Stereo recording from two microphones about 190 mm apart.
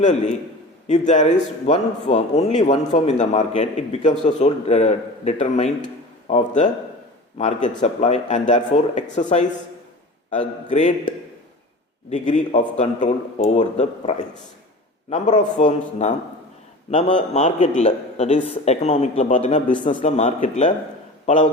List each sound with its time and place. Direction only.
0.0 s a man's voice: 35° left (ahead or behind)
12.1 s a man's voice: 40° left (ahead or behind)